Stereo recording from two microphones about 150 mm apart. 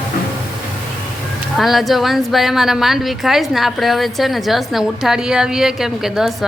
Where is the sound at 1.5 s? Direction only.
Centre (ahead or behind).